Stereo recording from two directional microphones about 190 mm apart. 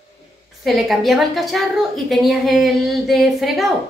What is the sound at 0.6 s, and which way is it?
A woman's voice, centre (ahead or behind).